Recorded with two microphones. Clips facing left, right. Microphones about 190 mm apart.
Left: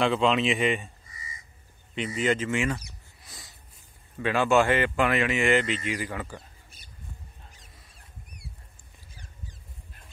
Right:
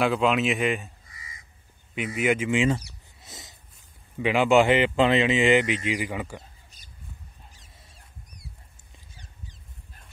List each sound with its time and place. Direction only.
0.0 s speech: 5° right (ahead or behind)
2.1 s speech: 10° right (ahead or behind)
3.2 s a sound: 20° right (ahead or behind)
4.2 s speech: 15° right (ahead or behind)